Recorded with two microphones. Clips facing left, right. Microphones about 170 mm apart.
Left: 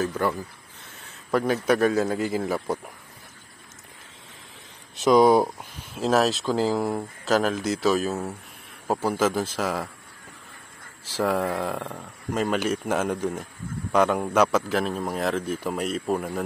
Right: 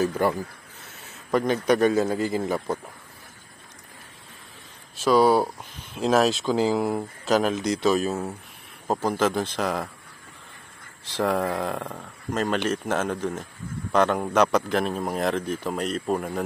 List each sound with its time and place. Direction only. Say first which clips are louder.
0.0 s speech: right 2 dB; 10° right (ahead or behind)
1.3 s speech: right 1 dB; 5° left (ahead or behind)
4.9 s speech: left 2 dB; 20° left (ahead or behind)
5.8 s speech: right 1 dB; centre (ahead or behind)
11.1 s speech: even; 10° left (ahead or behind)
12.4 s speech: even; 10° left (ahead or behind)